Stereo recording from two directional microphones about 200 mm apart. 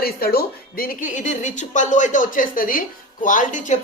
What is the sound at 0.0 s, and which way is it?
A woman's voice, 50° left (ahead or behind).